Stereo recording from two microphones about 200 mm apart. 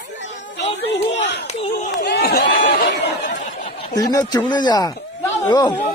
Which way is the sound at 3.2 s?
40° left (ahead or behind).